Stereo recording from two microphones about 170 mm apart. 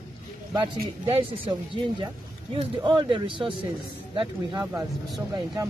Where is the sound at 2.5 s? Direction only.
30° right (ahead or behind).